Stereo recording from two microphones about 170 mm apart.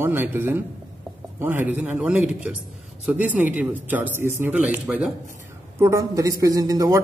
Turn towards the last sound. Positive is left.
turn(degrees=-20)  # may be behind; listen again after turning